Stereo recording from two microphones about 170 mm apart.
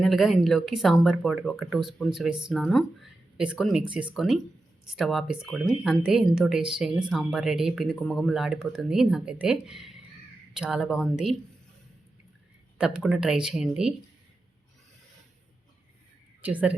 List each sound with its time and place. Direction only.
0.0 s speech: centre (ahead or behind)
12.8 s speech: 5° right (ahead or behind)
16.4 s speech: 10° right (ahead or behind)